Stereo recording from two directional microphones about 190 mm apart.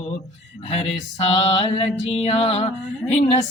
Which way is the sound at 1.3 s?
30° left (ahead or behind).